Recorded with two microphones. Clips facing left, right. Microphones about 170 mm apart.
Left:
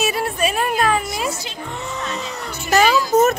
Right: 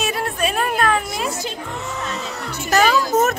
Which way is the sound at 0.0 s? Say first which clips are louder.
Left 2 dB; 5° left (ahead or behind).